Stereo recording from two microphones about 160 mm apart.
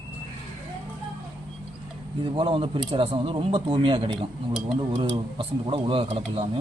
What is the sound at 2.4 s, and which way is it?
Speech, 35° right (ahead or behind).